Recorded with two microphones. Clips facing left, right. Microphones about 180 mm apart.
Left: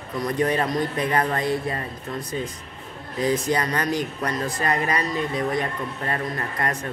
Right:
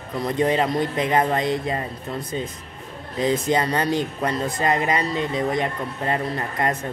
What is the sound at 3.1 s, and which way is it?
Speech, 25° right (ahead or behind).